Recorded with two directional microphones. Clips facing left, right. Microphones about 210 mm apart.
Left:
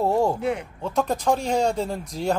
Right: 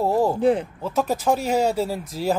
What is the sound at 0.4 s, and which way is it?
Speech, 30° right (ahead or behind).